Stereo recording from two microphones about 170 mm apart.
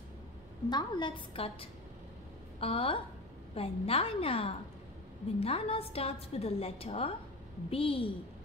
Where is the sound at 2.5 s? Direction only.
35° left (ahead or behind).